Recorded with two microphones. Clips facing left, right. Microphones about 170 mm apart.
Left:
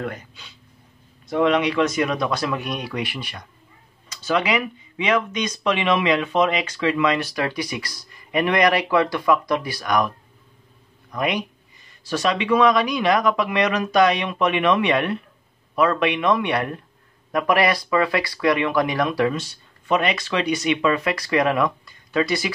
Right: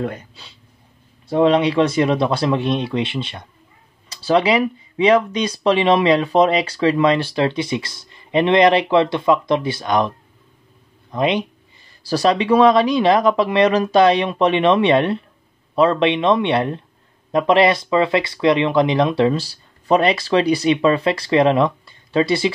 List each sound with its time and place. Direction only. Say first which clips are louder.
0.0 s speech: right 4 dB; 30° right (ahead or behind)